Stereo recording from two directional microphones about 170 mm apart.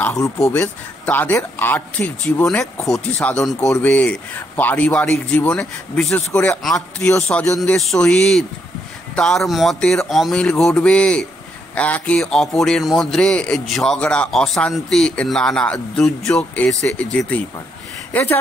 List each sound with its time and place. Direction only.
0.4 s a man's voice: 10° left (ahead or behind)
7.0 s speech: 15° left (ahead or behind)
7.5 s a man's voice: centre (ahead or behind)